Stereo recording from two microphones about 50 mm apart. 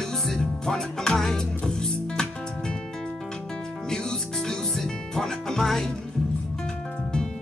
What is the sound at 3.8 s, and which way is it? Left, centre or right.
Music, centre.